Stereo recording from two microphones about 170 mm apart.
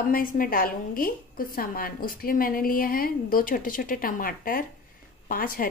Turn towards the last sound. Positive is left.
turn(degrees=55)  # may be behind; listen again after turning